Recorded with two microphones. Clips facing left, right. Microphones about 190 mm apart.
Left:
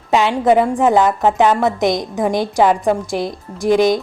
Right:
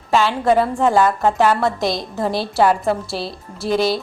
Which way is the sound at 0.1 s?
20° left (ahead or behind).